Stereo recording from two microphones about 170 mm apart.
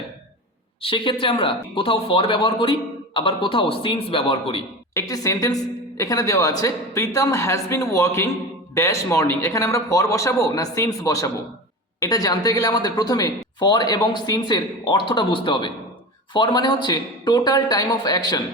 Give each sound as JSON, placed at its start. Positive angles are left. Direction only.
{"t": 0.8, "sound": "speech", "side_deg": 30}
{"t": 4.9, "sound": "speech", "side_deg": 20}